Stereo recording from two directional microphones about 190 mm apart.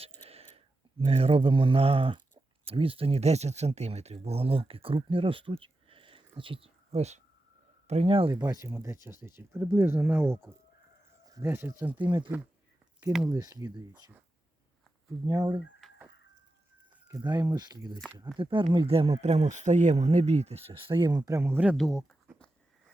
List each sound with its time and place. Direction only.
0.3 s speech: 30° right (ahead or behind); by 12.0 s 10° right (ahead or behind)
12.0 s speech: 25° right (ahead or behind)
15.3 s speech: 20° right (ahead or behind)
15.8 s a sound: centre (ahead or behind)
17.1 s speech: 20° right (ahead or behind); by 22.4 s centre (ahead or behind)